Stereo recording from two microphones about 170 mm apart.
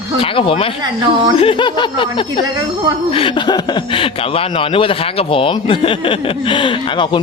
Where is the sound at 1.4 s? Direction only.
30° left (ahead or behind).